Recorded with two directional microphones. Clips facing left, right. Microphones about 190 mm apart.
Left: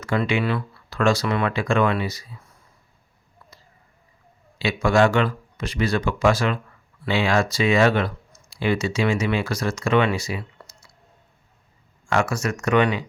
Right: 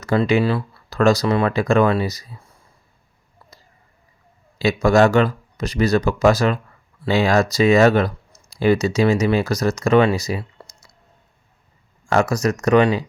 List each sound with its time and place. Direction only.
0.0 s speech: 40° right (ahead or behind)
4.5 s speech: 40° right (ahead or behind)
12.0 s speech: 40° right (ahead or behind)